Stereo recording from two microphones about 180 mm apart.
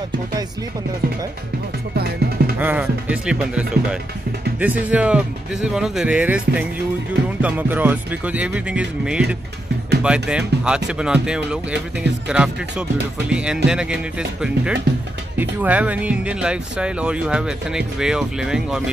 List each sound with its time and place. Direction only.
2.0 s music: 60° right (ahead or behind)
2.6 s speech: 10° right (ahead or behind)